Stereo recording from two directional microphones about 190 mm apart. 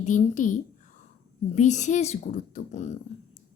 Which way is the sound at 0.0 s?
40° left (ahead or behind).